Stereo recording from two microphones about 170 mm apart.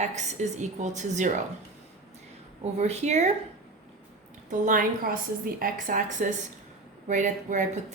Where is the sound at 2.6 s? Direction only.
40° right (ahead or behind).